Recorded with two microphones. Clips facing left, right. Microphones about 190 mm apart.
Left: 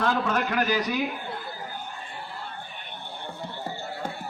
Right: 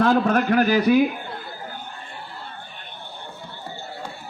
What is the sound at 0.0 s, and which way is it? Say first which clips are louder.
A man's voice: right 7 dB; 50° right (ahead or behind).